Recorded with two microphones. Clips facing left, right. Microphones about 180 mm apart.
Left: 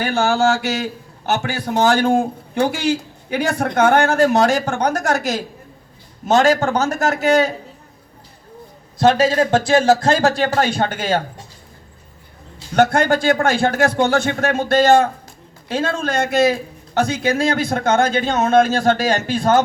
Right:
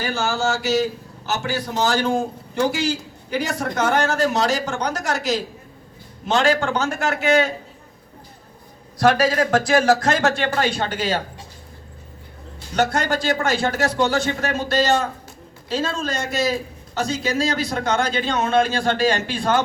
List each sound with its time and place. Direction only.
0.0 s a man's voice: 55° left (ahead or behind); by 7.5 s 40° left (ahead or behind)
9.0 s speech: 25° left (ahead or behind); by 11.2 s 50° left (ahead or behind)
12.7 s a man's voice: 55° left (ahead or behind)